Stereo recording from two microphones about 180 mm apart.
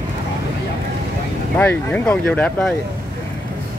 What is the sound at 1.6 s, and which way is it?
Speech, 10° left (ahead or behind).